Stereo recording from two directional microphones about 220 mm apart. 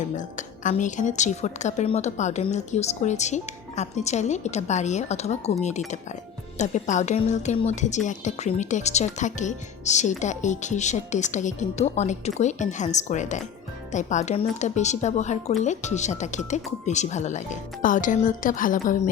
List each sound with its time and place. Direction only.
0.2 s speech: 35° left (ahead or behind)
6.6 s speech: 35° left (ahead or behind)